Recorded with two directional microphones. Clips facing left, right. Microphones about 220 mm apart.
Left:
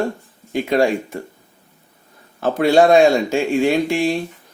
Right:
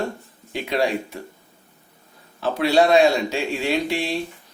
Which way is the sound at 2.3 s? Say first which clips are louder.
Left 4 dB; 50° left (ahead or behind).